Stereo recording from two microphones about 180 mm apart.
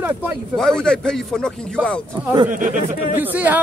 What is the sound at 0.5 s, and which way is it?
Speech, 5° left (ahead or behind).